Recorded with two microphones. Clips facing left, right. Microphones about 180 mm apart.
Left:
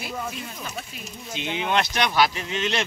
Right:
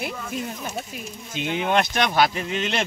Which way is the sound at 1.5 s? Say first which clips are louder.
Right 3 dB; 45° right (ahead or behind).